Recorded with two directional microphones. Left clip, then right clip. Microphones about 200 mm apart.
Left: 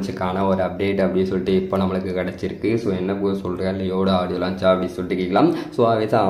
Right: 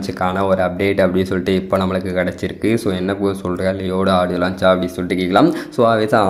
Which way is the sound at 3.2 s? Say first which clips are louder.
Right 4 dB; 25° right (ahead or behind).